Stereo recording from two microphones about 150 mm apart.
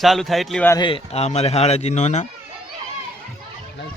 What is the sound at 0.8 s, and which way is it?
Speech, 35° left (ahead or behind).